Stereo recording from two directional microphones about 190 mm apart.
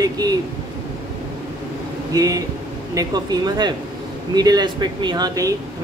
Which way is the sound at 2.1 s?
20° right (ahead or behind).